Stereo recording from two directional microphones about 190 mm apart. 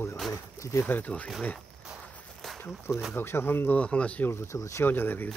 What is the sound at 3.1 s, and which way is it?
Speech, 10° left (ahead or behind).